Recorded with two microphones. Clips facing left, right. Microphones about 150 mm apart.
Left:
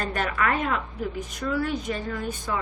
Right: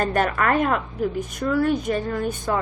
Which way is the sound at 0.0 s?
50° right (ahead or behind).